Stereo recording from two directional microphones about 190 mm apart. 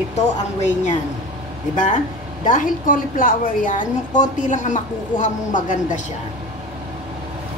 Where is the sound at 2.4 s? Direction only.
45° left (ahead or behind).